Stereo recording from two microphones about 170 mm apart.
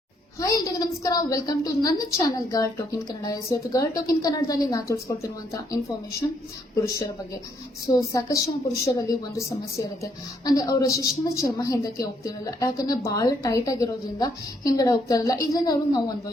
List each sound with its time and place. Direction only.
0.3 s a woman's voice: 20° left (ahead or behind)
7.9 s a woman's voice: 20° left (ahead or behind)